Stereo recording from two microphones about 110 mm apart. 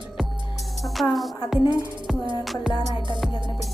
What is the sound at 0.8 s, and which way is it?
Music, centre (ahead or behind).